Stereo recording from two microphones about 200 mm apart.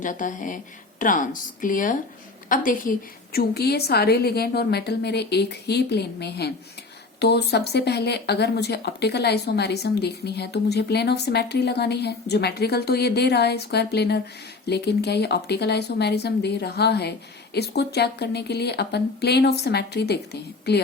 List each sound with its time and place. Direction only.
0.0 s a woman's voice: 40° left (ahead or behind)
3.3 s speech: 55° left (ahead or behind)